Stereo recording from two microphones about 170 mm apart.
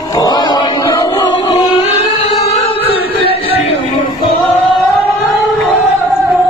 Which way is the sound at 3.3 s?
35° left (ahead or behind).